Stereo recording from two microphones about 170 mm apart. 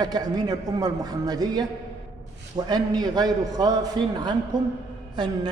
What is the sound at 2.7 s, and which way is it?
A man's voice, 25° right (ahead or behind).